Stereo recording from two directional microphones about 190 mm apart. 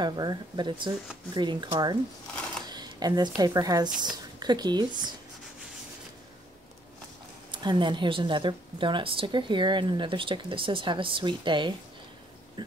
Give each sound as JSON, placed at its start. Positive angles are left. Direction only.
{"t": 0.0, "sound": "speech", "side_deg": -20}
{"t": 7.5, "sound": "speech", "side_deg": -25}
{"t": 12.6, "sound": "a sound", "side_deg": -25}